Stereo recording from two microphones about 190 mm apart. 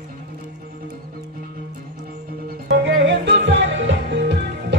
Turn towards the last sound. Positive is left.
turn(degrees=-65)  # may be behind; listen again after turning